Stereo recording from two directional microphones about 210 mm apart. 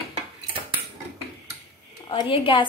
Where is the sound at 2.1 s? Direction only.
25° left (ahead or behind).